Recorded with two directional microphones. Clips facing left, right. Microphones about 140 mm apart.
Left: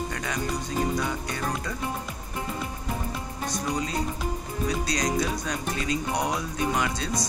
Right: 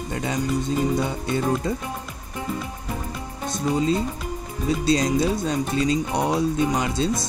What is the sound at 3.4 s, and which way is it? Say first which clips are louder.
Speech: right 8 dB; 25° right (ahead or behind).